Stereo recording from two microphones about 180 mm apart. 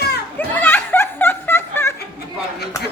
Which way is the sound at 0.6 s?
10° left (ahead or behind).